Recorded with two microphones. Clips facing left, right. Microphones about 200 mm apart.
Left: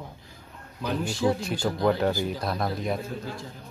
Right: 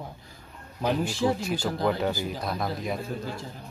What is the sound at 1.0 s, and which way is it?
Speech, 5° right (ahead or behind).